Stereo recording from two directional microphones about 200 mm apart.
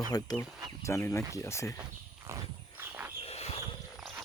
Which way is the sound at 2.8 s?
10° right (ahead or behind).